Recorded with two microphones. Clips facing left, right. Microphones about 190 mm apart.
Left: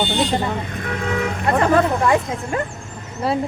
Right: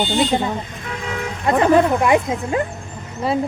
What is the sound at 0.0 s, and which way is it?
Speech, 15° right (ahead or behind).